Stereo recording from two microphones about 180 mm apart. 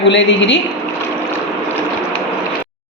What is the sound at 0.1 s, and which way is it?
Speech, 85° left.